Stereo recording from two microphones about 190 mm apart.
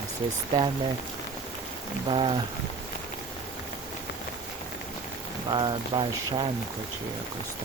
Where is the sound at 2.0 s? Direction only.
25° right (ahead or behind).